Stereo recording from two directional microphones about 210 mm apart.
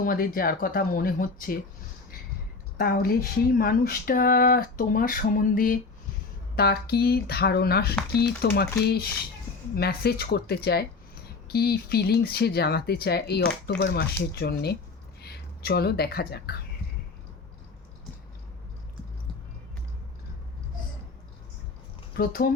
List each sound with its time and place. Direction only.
0.0 s speech: 45° left (ahead or behind)
2.7 s a woman's voice: 45° left (ahead or behind)
22.2 s speech: 45° left (ahead or behind)